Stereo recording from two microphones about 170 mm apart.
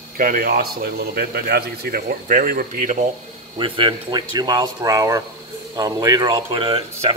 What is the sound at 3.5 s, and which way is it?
Speech, 30° right (ahead or behind).